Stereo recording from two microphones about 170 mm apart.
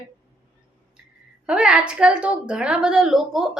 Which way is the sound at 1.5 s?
5° right (ahead or behind).